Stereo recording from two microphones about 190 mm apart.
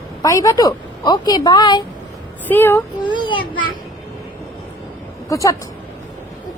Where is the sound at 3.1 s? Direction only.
25° left (ahead or behind).